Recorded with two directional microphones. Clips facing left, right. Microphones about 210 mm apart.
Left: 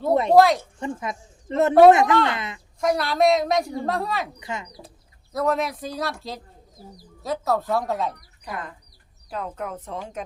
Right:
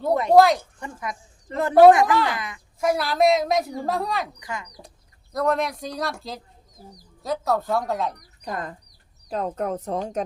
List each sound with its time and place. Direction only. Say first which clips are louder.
0.1 s speech: left 1 dB; 25° left (ahead or behind)
0.3 s a woman's voice: right 1 dB; centre (ahead or behind)
0.8 s speech: left 4 dB; 25° left (ahead or behind)
2.8 s a woman's voice: even; centre (ahead or behind)
4.4 s speech: left 2 dB; 25° left (ahead or behind)
5.3 s a woman's voice: even; centre (ahead or behind)
8.4 s speech: right 3 dB; 40° right (ahead or behind)